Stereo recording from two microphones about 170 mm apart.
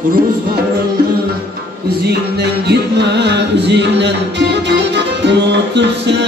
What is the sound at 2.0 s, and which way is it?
Music, 75° right (ahead or behind).